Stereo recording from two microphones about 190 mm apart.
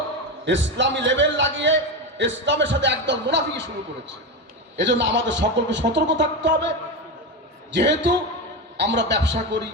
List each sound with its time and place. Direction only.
0.4 s a man's voice: 70° right (ahead or behind)
4.8 s a man's voice: 70° right (ahead or behind)